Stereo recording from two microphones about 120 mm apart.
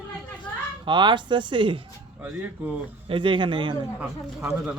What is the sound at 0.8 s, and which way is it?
Speech, 40° right (ahead or behind).